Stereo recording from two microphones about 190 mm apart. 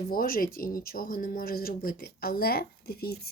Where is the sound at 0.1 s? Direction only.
50° left (ahead or behind).